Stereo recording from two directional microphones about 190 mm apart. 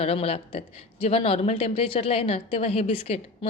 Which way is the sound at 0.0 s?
35° left (ahead or behind).